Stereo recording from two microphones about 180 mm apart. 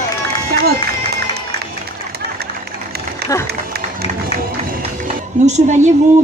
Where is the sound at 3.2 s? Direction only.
60° right (ahead or behind).